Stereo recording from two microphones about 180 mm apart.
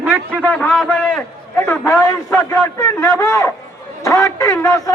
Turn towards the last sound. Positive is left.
turn(degrees=20)  # may be behind; listen again after turning